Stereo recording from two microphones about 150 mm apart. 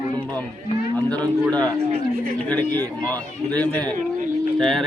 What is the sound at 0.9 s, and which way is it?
A man's voice, 10° left (ahead or behind).